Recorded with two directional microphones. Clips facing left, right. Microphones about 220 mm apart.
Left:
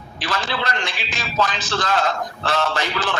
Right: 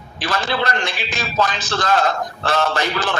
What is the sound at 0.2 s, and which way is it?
Speech, 45° right (ahead or behind).